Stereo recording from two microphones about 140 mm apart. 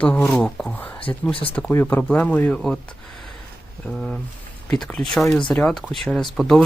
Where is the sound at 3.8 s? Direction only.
5° left (ahead or behind).